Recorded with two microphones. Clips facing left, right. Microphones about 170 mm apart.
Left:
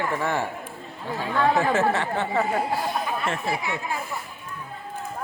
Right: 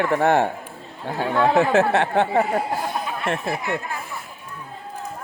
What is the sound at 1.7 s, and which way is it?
Speech, 65° right (ahead or behind).